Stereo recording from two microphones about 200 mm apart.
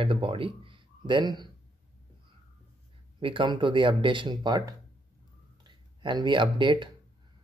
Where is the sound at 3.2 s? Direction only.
25° right (ahead or behind).